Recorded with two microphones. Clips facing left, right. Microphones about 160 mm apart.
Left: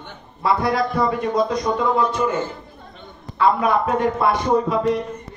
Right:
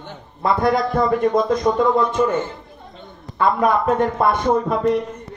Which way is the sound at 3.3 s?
45° right (ahead or behind).